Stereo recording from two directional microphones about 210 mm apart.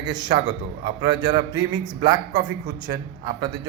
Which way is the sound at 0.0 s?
20° right (ahead or behind).